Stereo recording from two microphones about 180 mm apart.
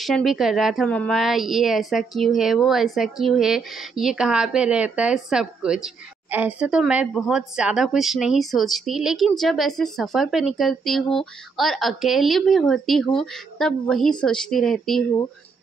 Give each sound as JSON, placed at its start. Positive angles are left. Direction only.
{"t": 0.0, "sound": "a woman's voice", "side_deg": 0}